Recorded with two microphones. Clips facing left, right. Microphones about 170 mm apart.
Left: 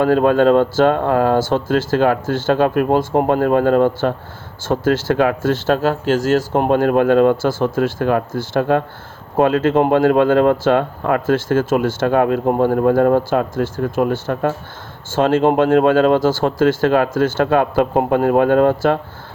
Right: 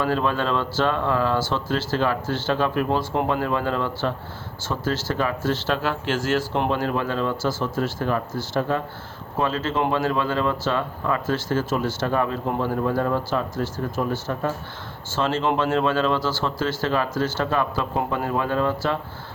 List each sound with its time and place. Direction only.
0.0 s speech: 55° left (ahead or behind)